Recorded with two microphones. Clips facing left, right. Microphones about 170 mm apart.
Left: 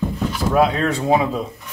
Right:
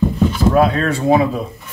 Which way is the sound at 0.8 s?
20° left (ahead or behind).